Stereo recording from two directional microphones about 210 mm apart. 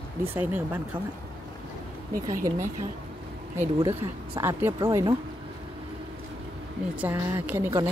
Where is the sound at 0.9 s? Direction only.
25° right (ahead or behind).